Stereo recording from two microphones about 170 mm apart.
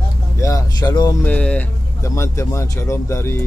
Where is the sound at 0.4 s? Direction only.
20° left (ahead or behind).